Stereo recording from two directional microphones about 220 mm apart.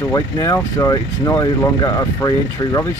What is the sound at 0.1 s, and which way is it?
Speech, 15° left (ahead or behind).